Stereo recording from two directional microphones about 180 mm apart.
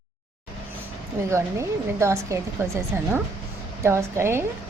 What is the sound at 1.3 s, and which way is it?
Speech, 15° right (ahead or behind).